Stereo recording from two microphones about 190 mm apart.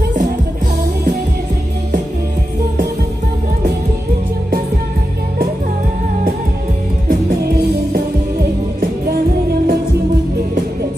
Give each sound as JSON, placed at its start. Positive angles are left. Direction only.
{"t": 7.1, "sound": "music", "side_deg": -55}